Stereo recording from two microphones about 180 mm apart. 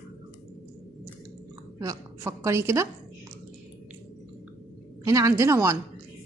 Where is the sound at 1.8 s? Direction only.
20° right (ahead or behind).